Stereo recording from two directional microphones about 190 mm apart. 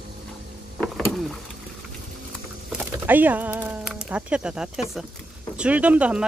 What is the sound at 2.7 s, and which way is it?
Speech, 10° right (ahead or behind).